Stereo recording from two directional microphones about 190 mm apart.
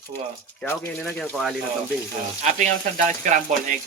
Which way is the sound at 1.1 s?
Centre (ahead or behind).